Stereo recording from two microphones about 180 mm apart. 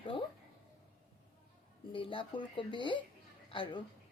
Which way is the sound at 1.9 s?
30° left (ahead or behind).